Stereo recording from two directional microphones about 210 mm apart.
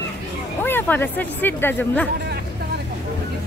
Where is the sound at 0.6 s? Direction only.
10° left (ahead or behind).